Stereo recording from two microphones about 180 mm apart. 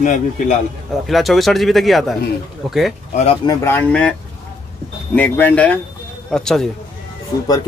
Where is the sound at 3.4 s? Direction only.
10° left (ahead or behind).